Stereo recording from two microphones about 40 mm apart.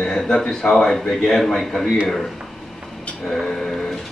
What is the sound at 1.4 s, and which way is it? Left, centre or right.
Speech, centre.